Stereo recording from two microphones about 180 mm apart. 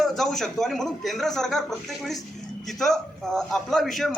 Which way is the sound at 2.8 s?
5° left (ahead or behind).